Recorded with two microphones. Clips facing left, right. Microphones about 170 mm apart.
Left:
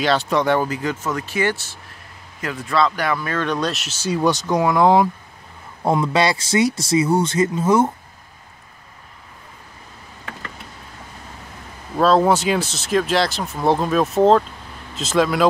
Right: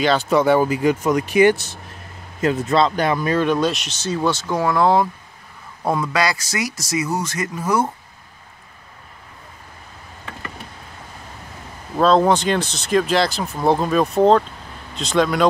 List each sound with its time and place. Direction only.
0.0 s speech: centre (ahead or behind); by 3.4 s 15° right (ahead or behind)
3.4 s speech: 5° right (ahead or behind); by 7.9 s 25° left (ahead or behind)
12.0 s speech: 5° left (ahead or behind)